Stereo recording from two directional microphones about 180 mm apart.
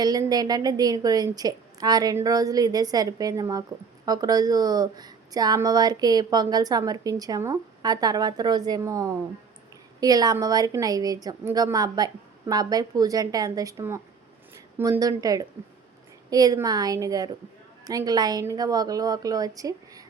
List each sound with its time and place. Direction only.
0.0 s speech: 20° right (ahead or behind)